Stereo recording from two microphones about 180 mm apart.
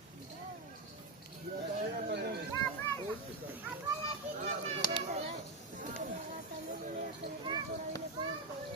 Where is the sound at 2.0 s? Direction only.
60° right (ahead or behind).